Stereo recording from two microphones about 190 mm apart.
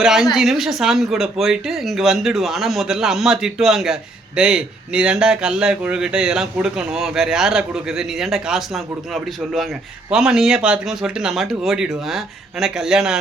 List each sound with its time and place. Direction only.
0.0 s speech: centre (ahead or behind)